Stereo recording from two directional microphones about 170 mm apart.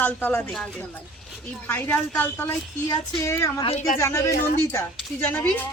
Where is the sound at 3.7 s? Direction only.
45° left (ahead or behind).